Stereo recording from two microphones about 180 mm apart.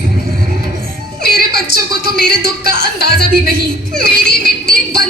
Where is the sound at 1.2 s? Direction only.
50° right (ahead or behind).